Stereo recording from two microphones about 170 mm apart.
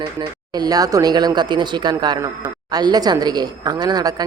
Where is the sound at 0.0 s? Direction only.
25° right (ahead or behind).